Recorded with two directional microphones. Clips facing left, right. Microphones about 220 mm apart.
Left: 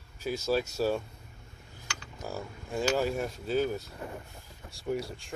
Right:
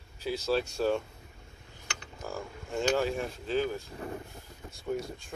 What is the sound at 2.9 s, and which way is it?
Speech, 10° left (ahead or behind).